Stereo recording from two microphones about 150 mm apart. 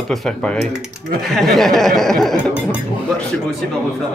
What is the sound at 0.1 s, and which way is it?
Speech, 5° left (ahead or behind).